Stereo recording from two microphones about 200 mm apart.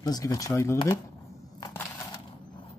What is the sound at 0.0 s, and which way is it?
Speech, 20° left (ahead or behind).